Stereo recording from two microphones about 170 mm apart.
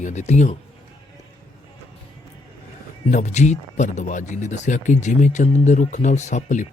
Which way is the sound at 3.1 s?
45° left (ahead or behind).